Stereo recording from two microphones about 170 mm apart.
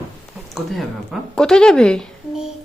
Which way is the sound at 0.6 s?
Centre (ahead or behind).